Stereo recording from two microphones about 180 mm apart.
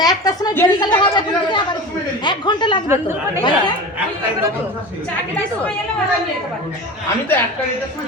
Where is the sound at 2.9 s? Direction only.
15° right (ahead or behind).